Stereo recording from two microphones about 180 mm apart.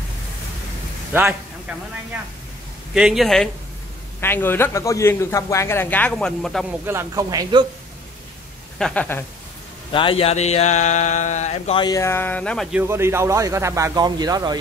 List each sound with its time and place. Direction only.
1.1 s a man's voice: 5° right (ahead or behind)
2.9 s speech: 5° right (ahead or behind)
4.2 s a man's voice: 10° left (ahead or behind); by 7.6 s 20° right (ahead or behind)
8.7 s a man's voice: 5° left (ahead or behind)
9.9 s speech: 30° left (ahead or behind)
11.8 s a man's voice: 15° left (ahead or behind)
12.7 s speech: 15° right (ahead or behind)